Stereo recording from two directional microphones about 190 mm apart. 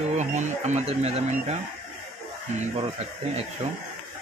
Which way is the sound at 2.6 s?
30° right (ahead or behind).